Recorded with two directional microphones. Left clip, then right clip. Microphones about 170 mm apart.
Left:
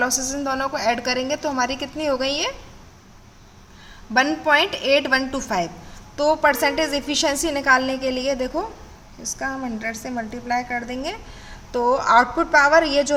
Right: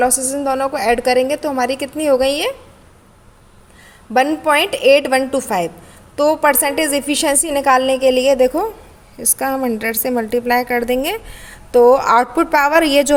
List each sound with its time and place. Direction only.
0.0 s a woman's voice: 35° right (ahead or behind)
4.1 s a woman's voice: 35° right (ahead or behind)
9.4 s a woman's voice: 55° right (ahead or behind)